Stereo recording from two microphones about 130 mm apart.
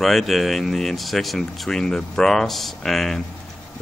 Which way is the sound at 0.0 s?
Centre (ahead or behind).